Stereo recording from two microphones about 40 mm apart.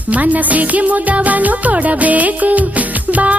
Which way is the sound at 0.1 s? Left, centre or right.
Right.